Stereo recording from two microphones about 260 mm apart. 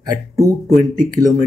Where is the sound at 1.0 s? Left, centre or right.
Centre.